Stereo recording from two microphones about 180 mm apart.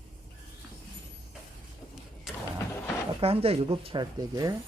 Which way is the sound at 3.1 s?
35° right (ahead or behind).